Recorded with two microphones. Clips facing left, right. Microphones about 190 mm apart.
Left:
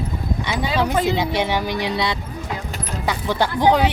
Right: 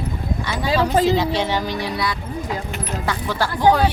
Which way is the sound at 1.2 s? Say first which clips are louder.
Even; 15° left (ahead or behind).